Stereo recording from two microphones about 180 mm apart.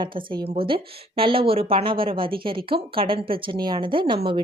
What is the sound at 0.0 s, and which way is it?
A woman's voice, 25° right (ahead or behind).